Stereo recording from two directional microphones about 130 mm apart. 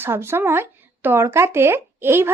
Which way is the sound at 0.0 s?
20° right (ahead or behind).